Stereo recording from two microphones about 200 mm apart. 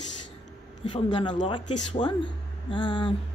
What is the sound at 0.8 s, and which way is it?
Speech, 25° left (ahead or behind).